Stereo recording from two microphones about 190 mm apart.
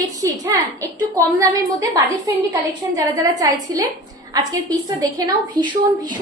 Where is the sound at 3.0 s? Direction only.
20° right (ahead or behind).